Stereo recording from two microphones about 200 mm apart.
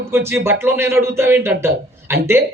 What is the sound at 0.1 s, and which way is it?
Speech, 10° right (ahead or behind).